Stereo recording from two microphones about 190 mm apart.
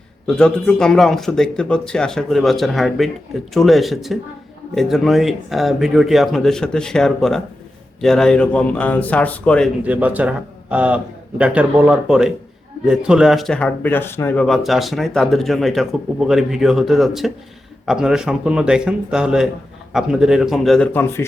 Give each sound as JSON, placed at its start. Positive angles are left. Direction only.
{"t": 0.3, "sound": "speech", "side_deg": 5}
{"t": 9.8, "sound": "a man's voice", "side_deg": -5}